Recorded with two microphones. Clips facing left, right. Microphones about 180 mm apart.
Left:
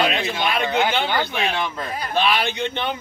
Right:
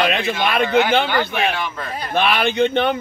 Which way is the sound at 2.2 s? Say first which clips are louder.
Right 5 dB; 55° right (ahead or behind).